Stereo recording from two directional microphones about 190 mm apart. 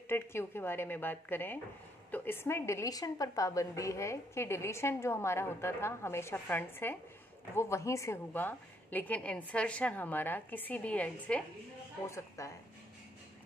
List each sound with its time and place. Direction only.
0.1 s a woman's voice: 10° left (ahead or behind)